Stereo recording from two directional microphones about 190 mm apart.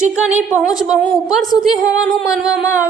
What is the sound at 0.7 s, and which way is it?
A woman's voice, centre (ahead or behind).